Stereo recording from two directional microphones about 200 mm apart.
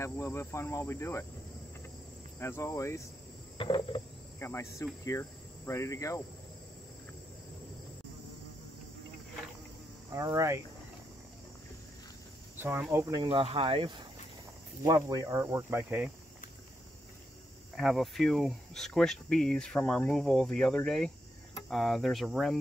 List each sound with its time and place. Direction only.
0.0 s insect: 15° left (ahead or behind)
2.4 s insect: 15° left (ahead or behind)
3.5 s cricket: 25° left (ahead or behind)
4.4 s insect: 15° left (ahead or behind)
10.1 s speech: 15° right (ahead or behind)
12.5 s speech: 10° right (ahead or behind)
17.7 s speech: centre (ahead or behind)